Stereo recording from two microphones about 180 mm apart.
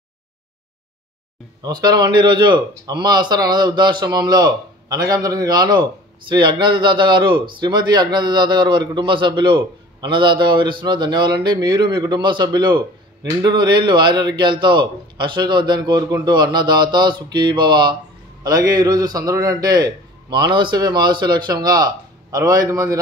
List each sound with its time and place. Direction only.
1.6 s a man's voice: 25° right (ahead or behind)